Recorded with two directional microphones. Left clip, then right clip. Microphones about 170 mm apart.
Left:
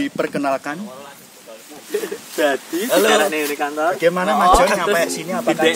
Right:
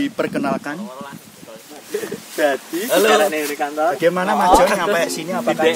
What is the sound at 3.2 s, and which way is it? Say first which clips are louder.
Speech: even; 40° left (ahead or behind).